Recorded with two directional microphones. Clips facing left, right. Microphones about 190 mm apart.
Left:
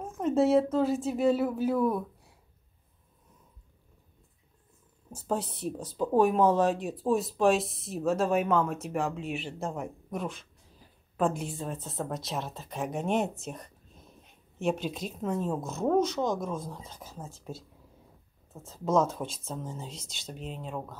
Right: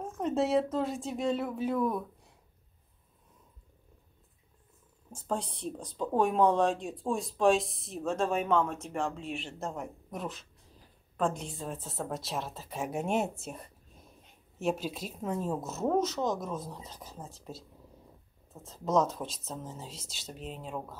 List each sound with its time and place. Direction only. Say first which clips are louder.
0.2 s speech: left 4 dB; centre (ahead or behind)
5.1 s speech: left 3 dB; 5° left (ahead or behind)
18.7 s speech: left 2 dB; centre (ahead or behind)